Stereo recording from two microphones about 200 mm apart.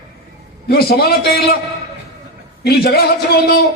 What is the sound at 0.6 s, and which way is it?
Speech, 50° left (ahead or behind).